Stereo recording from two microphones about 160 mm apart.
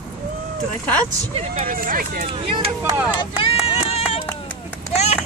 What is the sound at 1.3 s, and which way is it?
Speech, 40° right (ahead or behind).